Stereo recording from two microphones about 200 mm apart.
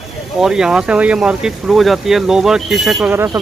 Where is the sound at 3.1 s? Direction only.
10° right (ahead or behind).